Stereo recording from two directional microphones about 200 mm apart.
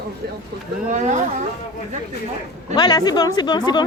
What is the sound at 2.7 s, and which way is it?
Speech, 20° left (ahead or behind).